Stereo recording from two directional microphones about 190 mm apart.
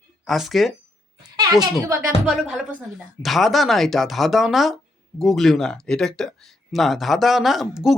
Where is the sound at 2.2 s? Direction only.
Centre (ahead or behind).